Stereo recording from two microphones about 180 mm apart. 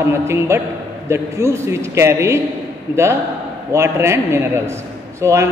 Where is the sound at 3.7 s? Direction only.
15° right (ahead or behind).